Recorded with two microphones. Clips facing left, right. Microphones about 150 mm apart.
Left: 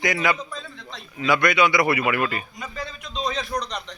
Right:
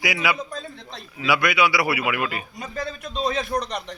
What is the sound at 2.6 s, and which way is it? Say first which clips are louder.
Speech: right 3 dB; 45° right (ahead or behind).